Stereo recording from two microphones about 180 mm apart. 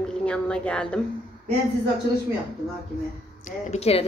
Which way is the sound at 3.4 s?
35° left (ahead or behind).